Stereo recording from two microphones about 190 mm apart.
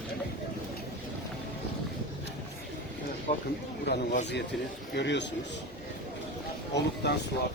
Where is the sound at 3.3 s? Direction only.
40° left (ahead or behind).